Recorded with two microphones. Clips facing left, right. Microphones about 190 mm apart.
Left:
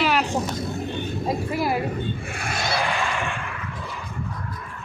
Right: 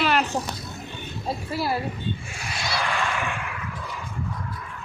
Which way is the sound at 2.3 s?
55° left (ahead or behind).